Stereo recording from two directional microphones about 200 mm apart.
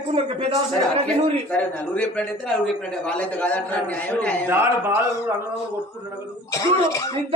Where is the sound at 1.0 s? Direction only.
5° left (ahead or behind).